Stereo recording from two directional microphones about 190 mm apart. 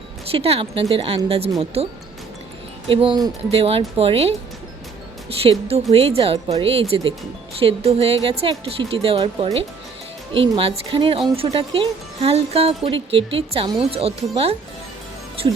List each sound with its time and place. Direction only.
0.3 s speech: 30° right (ahead or behind)
2.9 s speech: 25° right (ahead or behind)
5.4 s speech: 30° right (ahead or behind)